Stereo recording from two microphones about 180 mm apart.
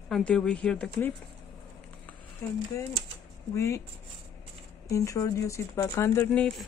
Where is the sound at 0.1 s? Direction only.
5° left (ahead or behind).